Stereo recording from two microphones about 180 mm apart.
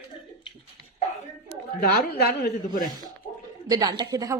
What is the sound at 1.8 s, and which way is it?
A woman's voice, 55° left (ahead or behind).